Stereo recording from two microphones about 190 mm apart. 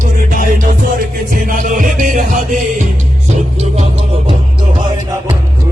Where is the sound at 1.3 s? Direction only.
45° right (ahead or behind).